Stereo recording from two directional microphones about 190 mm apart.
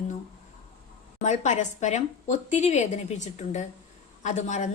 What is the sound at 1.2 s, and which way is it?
A woman's voice, 40° left (ahead or behind).